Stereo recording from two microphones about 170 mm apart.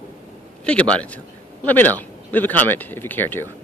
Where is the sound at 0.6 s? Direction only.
5° left (ahead or behind).